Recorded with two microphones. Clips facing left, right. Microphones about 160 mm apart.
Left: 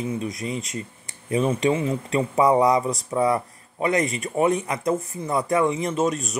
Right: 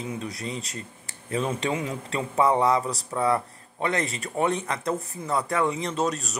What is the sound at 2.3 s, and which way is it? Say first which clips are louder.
Speech: left 3 dB; 15° left (ahead or behind).